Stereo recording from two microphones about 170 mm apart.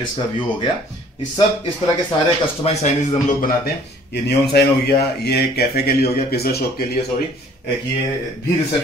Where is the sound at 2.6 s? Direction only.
45° left (ahead or behind); by 7.1 s 65° left (ahead or behind).